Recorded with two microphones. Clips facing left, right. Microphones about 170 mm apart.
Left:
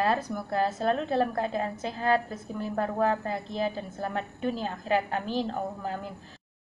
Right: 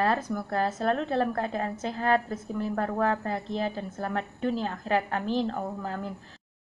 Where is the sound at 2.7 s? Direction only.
20° left (ahead or behind).